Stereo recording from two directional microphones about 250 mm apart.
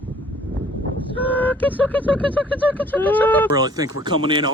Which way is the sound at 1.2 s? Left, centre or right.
Centre.